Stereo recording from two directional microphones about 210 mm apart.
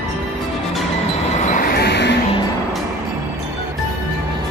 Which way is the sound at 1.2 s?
35° left (ahead or behind).